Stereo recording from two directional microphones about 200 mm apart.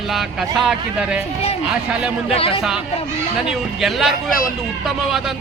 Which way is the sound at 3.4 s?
Centre (ahead or behind).